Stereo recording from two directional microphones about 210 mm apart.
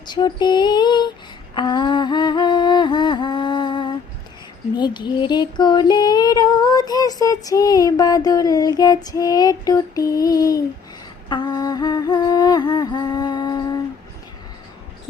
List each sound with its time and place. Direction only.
0.1 s music: 20° left (ahead or behind)
1.5 s a sound: 20° left (ahead or behind)
4.8 s child singing: 20° left (ahead or behind)
11.3 s music: 20° left (ahead or behind)